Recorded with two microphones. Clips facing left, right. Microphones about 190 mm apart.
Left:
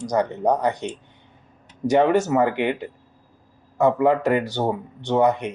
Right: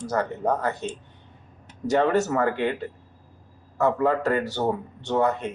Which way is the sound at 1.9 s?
15° left (ahead or behind).